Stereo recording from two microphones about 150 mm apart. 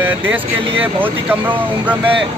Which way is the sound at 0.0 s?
15° right (ahead or behind).